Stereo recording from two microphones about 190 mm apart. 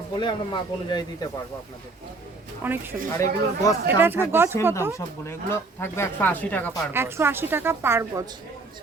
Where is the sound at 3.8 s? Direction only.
10° right (ahead or behind).